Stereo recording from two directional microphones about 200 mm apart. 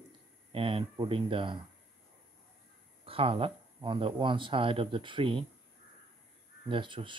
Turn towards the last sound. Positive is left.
turn(degrees=-25)  # may be behind; listen again after turning